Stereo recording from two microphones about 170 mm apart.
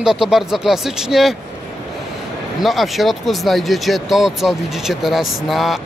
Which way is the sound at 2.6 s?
Centre (ahead or behind).